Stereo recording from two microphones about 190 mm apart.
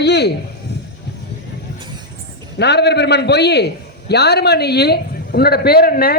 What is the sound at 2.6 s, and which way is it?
A man's voice, 60° left (ahead or behind).